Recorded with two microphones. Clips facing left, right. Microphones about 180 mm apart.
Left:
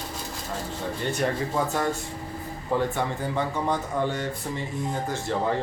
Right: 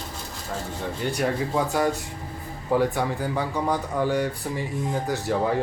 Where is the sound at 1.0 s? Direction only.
10° right (ahead or behind).